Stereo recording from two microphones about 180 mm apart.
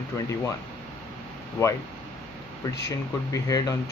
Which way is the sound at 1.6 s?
15° left (ahead or behind).